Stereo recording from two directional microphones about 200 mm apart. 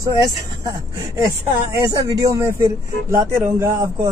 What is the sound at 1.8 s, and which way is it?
Speech, 20° right (ahead or behind).